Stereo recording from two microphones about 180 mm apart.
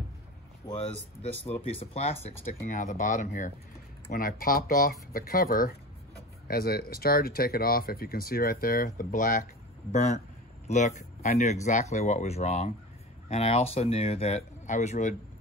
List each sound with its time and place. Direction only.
1.4 s speech: 30° left (ahead or behind)
2.6 s speech: 45° left (ahead or behind)